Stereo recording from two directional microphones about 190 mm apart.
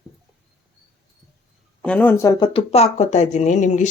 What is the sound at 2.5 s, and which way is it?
Speech, 35° left (ahead or behind).